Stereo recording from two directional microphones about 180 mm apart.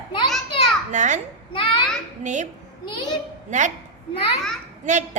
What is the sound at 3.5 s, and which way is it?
Speech, 40° right (ahead or behind).